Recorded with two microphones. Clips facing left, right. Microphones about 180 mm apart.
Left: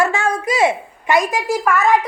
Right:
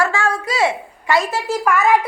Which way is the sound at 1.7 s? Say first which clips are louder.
Even; centre (ahead or behind).